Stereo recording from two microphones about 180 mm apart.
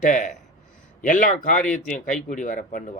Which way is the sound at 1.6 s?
5° left (ahead or behind).